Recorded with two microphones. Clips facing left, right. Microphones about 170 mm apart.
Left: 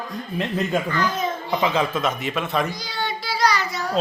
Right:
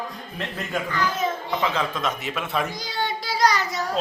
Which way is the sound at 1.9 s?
Centre (ahead or behind).